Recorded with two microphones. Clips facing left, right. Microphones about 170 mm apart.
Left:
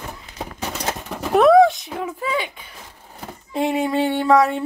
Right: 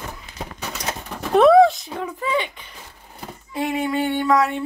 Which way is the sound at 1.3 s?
Centre (ahead or behind).